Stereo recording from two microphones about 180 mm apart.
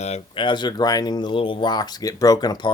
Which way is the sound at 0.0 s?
30° left (ahead or behind).